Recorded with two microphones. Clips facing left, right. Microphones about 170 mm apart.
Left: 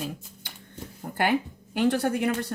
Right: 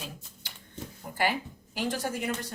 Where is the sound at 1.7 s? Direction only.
60° left (ahead or behind).